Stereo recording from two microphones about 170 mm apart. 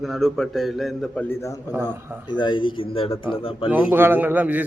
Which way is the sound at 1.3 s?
15° left (ahead or behind).